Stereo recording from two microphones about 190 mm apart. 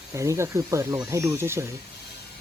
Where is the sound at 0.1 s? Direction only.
15° right (ahead or behind).